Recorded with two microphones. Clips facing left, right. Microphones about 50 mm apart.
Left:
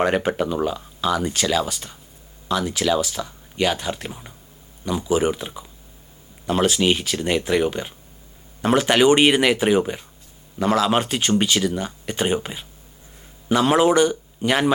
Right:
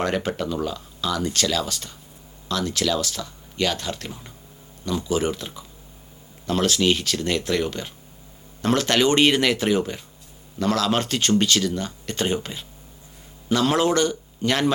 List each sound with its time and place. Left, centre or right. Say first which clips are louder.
0.0 s speech: left 4 dB; left